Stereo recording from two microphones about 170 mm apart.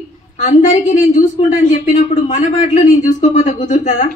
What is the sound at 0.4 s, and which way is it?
Speech, 45° left (ahead or behind).